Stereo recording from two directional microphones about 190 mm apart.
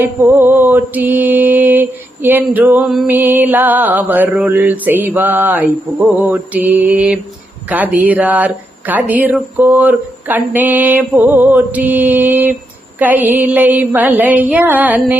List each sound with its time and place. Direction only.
0.0 s mantra: 10° right (ahead or behind)